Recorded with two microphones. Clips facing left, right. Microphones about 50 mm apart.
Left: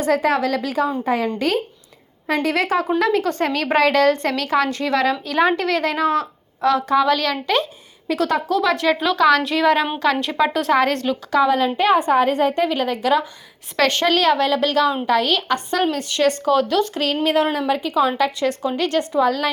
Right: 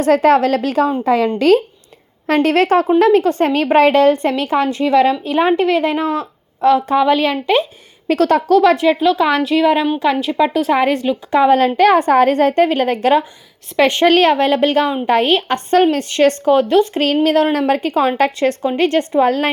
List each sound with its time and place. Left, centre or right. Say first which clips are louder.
0.0 s a woman's voice: right 7 dB; right
2.2 s a woman's voice: right 6 dB; right
8.0 s a woman's voice: right 6 dB; right
8.7 s a woman's voice: right 5 dB; right
9.4 s a woman's voice: right 4 dB; centre
11.3 s a woman's voice: right 4 dB; right
11.8 s a woman's voice: right 3 dB; right
13.7 s a woman's voice: right 5 dB; right
14.0 s a woman's voice: right 6 dB; right
17.2 s a woman's voice: right 3 dB; right